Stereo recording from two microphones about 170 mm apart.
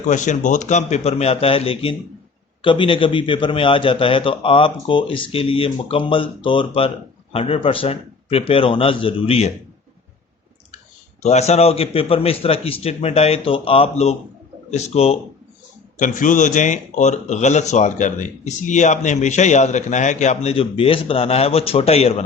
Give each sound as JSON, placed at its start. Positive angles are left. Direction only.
{"t": 0.1, "sound": "a man's voice", "side_deg": 45}
{"t": 11.2, "sound": "a man's voice", "side_deg": 40}
{"t": 16.0, "sound": "speech", "side_deg": 50}